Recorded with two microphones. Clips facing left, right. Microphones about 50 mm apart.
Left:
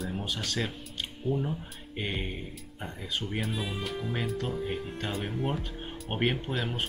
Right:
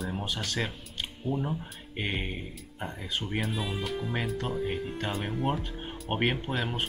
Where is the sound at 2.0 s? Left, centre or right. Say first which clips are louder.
Right 1 dB; centre.